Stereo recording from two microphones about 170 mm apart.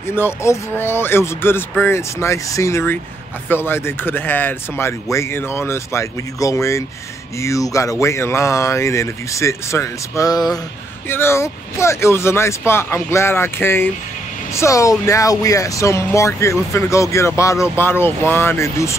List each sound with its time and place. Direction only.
0.1 s speech: 15° left (ahead or behind)